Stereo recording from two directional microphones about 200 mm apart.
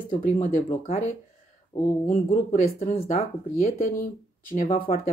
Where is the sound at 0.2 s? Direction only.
45° left (ahead or behind).